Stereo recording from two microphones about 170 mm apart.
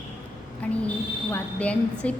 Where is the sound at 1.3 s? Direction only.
10° left (ahead or behind).